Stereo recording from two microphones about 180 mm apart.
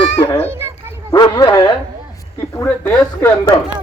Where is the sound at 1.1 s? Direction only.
25° left (ahead or behind).